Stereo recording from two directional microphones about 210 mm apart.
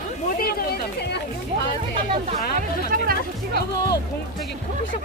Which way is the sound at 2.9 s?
40° right (ahead or behind).